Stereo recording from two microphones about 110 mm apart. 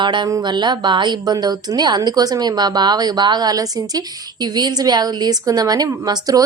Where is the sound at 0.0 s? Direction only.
45° right (ahead or behind).